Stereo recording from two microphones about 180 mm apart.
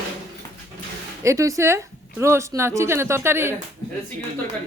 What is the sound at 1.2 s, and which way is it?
Speech, 15° right (ahead or behind).